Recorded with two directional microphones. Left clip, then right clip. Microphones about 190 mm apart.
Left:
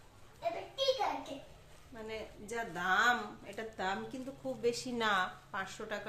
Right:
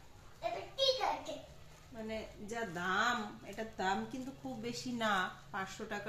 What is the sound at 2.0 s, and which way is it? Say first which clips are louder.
A woman's voice: even; 20° left (ahead or behind).